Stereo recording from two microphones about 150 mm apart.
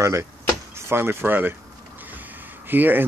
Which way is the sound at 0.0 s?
20° right (ahead or behind).